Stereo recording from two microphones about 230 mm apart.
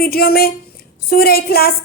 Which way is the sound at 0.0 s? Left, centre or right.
Left.